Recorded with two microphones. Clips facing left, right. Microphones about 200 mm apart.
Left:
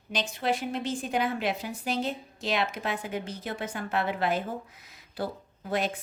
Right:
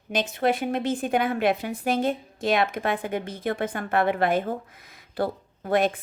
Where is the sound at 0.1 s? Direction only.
50° right (ahead or behind).